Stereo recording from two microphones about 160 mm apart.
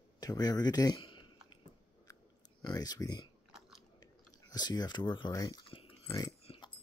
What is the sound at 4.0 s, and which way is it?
Chewing, 25° left (ahead or behind).